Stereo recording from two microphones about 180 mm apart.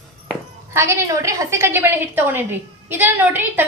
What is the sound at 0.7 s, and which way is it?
A woman's voice, 15° right (ahead or behind).